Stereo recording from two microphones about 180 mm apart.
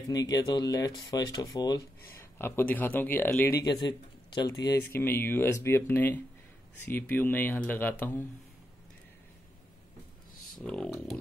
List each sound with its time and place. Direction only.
0.1 s speech: 20° left (ahead or behind)
10.6 s speech: 5° left (ahead or behind)